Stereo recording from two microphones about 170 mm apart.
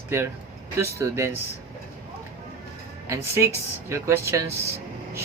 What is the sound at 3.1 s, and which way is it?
Speech, 15° right (ahead or behind).